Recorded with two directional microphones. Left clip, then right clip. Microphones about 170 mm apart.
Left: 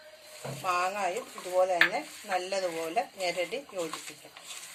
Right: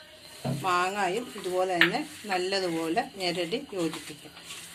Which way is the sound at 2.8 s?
35° left (ahead or behind).